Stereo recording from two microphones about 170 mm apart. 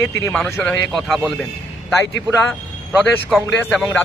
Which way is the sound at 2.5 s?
5° left (ahead or behind).